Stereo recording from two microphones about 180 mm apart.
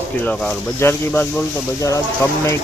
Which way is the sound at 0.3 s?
10° left (ahead or behind).